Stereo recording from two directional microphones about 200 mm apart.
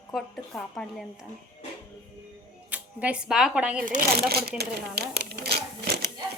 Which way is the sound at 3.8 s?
45° right (ahead or behind).